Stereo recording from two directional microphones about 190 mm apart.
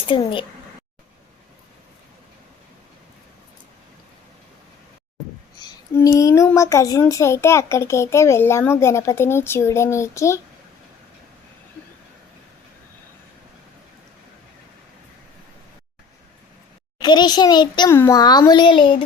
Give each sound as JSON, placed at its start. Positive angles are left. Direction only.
{"t": 0.1, "sound": "a child's voice", "side_deg": 25}
{"t": 5.6, "sound": "speech", "side_deg": 15}
{"t": 17.0, "sound": "a child's voice", "side_deg": 20}